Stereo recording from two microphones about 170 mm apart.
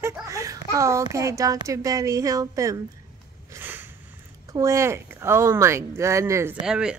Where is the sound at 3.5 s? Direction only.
10° right (ahead or behind).